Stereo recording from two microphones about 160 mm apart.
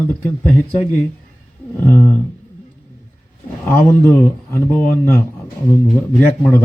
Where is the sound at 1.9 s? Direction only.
15° left (ahead or behind).